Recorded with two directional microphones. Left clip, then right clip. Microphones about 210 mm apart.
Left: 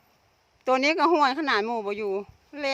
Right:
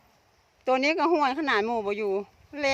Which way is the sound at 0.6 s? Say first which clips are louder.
Left 2 dB; 10° left (ahead or behind).